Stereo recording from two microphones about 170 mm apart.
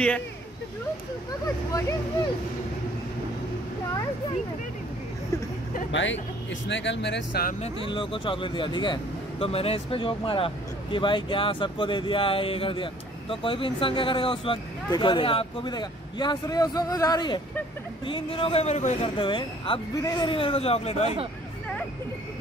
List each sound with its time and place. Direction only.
1.7 s speech: 15° left (ahead or behind)
5.9 s speech: 90° left
7.6 s a man's voice: 30° left (ahead or behind)
19.1 s a man's voice: 30° left (ahead or behind)